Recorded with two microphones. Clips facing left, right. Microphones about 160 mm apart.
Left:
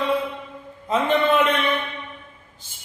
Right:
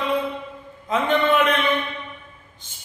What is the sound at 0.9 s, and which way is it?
Speech, 30° left (ahead or behind).